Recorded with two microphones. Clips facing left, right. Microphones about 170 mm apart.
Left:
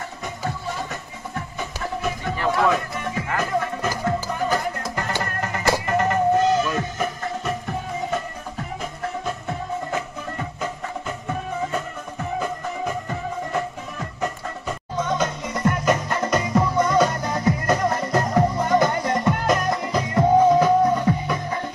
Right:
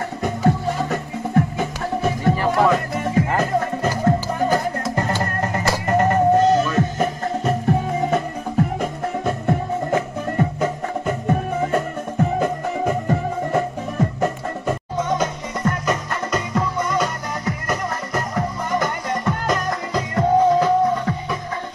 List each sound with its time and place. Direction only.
0.2 s music: 55° right (ahead or behind)
1.6 s music: 40° right (ahead or behind)
15.8 s music: 20° left (ahead or behind)